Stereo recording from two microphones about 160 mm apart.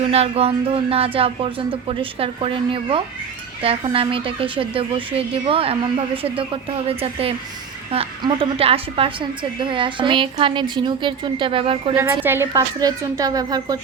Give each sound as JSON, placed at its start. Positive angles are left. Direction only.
{"t": 0.1, "sound": "a woman's voice", "side_deg": -40}
{"t": 11.9, "sound": "a woman's voice", "side_deg": -15}